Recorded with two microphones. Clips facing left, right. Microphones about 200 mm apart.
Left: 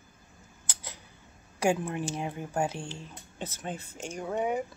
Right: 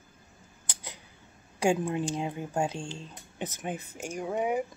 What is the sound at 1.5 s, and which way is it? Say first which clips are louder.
Speech: right 1 dB; 15° right (ahead or behind).